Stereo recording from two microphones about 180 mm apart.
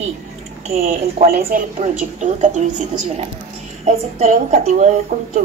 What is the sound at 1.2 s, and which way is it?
A woman's voice, 50° right (ahead or behind).